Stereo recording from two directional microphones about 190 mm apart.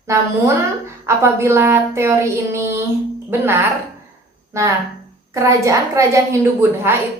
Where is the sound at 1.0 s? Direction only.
15° right (ahead or behind).